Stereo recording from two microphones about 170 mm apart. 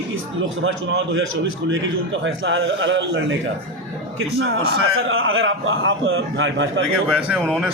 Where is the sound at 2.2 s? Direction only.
90° right.